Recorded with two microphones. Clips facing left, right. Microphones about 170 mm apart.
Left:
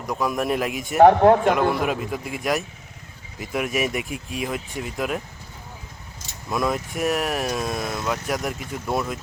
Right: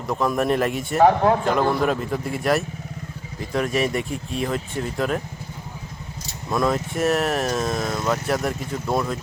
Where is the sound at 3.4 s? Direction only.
10° left (ahead or behind).